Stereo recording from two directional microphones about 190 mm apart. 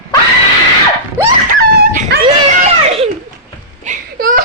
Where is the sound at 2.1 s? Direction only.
60° right (ahead or behind).